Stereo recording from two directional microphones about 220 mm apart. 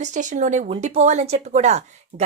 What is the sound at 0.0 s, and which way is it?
Speech, 35° right (ahead or behind).